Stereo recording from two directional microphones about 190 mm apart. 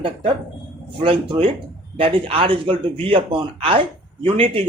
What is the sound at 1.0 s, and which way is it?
Speech, 30° right (ahead or behind).